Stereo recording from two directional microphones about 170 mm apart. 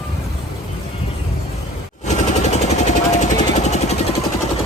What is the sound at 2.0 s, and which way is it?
Vehicle, 40° left (ahead or behind).